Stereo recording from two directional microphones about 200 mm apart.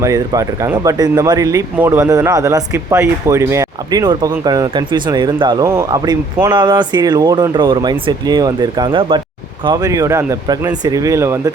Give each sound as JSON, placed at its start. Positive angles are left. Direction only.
{"t": 0.0, "sound": "speech", "side_deg": -15}